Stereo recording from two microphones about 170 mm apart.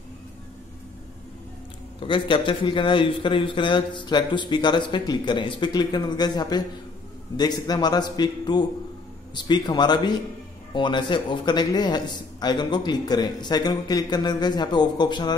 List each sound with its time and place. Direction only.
2.0 s a man's voice: 30° left (ahead or behind)